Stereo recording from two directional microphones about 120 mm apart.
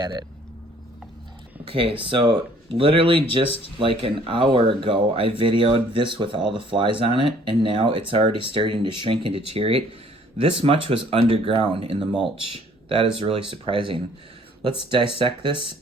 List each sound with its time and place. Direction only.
1.7 s speech: 45° right (ahead or behind)